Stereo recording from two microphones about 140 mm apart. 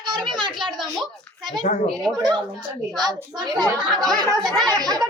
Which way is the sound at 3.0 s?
30° right (ahead or behind).